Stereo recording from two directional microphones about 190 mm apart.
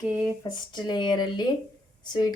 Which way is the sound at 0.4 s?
25° left (ahead or behind).